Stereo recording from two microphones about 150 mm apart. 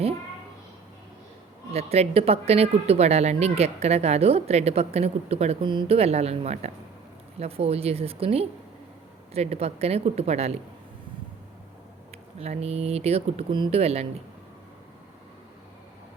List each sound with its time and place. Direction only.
1.7 s a woman's voice: 45° right (ahead or behind)
12.1 s speech: 45° right (ahead or behind)